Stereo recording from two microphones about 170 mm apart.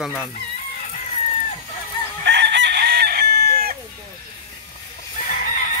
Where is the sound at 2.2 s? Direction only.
85° right; by 3.8 s 65° right (ahead or behind).